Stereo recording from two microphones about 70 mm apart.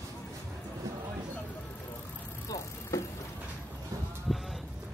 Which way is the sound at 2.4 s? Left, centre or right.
Left.